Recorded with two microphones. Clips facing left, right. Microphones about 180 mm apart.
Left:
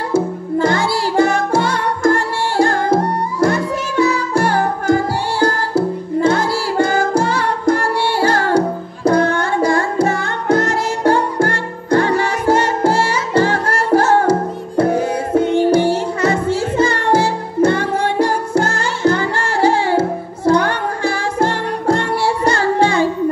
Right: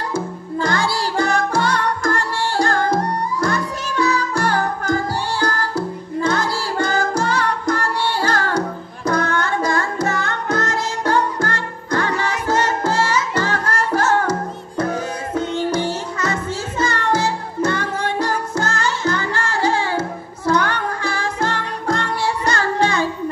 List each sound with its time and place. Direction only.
0.1 s music: 25° left (ahead or behind)